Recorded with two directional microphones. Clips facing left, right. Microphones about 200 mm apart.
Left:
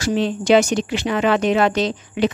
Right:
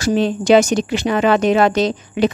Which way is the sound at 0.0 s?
45° right (ahead or behind).